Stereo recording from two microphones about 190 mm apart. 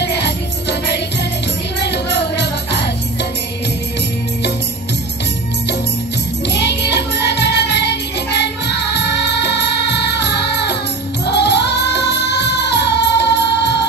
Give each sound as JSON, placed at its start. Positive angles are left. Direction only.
{"t": 0.0, "sound": "music", "side_deg": 60}
{"t": 6.5, "sound": "music", "side_deg": 60}